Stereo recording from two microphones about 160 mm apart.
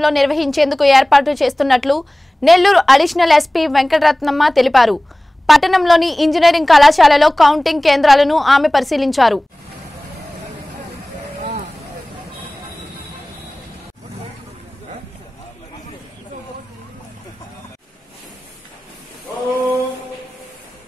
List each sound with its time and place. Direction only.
0.0 s a woman's voice: centre (ahead or behind)